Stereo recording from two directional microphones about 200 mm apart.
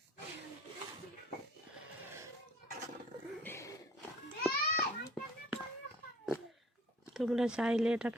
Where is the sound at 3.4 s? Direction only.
15° left (ahead or behind).